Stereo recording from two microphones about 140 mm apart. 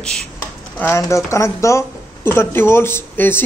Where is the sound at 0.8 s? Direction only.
20° left (ahead or behind).